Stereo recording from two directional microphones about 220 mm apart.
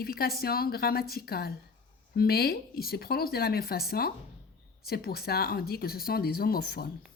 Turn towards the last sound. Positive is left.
turn(degrees=45)  # may be behind; listen again after turning